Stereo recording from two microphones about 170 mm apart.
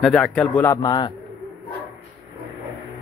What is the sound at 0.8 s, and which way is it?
Speech, 25° left (ahead or behind).